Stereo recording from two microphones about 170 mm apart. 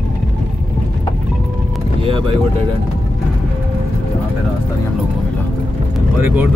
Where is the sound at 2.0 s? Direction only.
30° right (ahead or behind).